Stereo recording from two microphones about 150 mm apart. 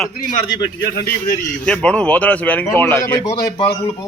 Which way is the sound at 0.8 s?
90° left.